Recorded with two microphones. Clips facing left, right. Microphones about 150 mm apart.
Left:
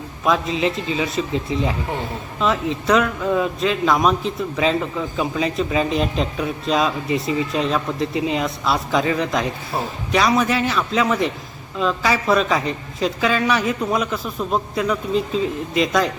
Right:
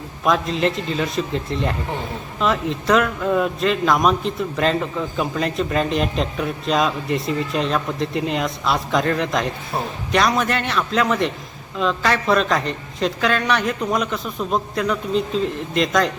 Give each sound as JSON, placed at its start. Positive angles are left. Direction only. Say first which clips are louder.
{"t": 0.3, "sound": "a man's voice", "louder": "even", "side_deg": 0}